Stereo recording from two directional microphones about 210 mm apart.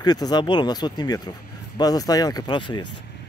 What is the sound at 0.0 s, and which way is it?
Speech, 20° left (ahead or behind).